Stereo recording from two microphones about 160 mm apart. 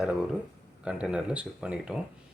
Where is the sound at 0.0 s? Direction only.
5° right (ahead or behind).